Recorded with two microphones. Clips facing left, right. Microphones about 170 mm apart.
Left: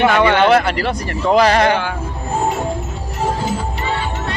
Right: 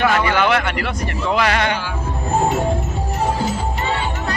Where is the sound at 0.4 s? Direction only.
35° left (ahead or behind).